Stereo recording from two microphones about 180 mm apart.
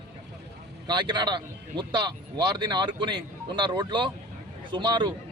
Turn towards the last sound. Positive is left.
turn(degrees=-25)  # may be behind; listen again after turning